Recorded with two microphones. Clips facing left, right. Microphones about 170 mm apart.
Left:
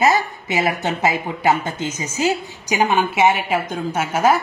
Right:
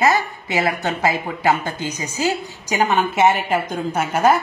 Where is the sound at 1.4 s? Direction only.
20° left (ahead or behind).